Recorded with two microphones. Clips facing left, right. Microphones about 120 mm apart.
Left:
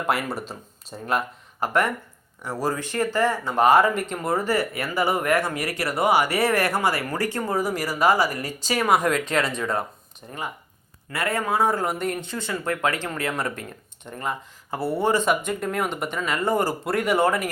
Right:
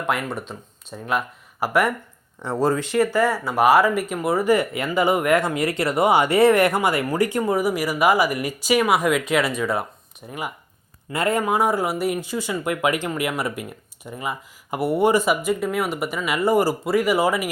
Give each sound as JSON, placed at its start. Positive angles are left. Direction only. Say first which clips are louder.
{"t": 0.1, "sound": "speech", "louder": "right 1 dB", "side_deg": 5}
{"t": 2.4, "sound": "speech", "louder": "right 7 dB", "side_deg": -25}
{"t": 2.9, "sound": "speech", "louder": "right 3 dB", "side_deg": -10}
{"t": 11.1, "sound": "speech", "louder": "right 4 dB", "side_deg": -20}